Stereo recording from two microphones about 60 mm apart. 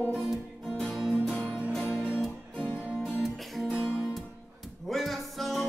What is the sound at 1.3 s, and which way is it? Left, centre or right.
Music, centre.